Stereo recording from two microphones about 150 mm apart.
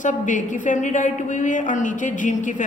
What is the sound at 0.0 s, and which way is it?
A woman's voice, 55° left (ahead or behind).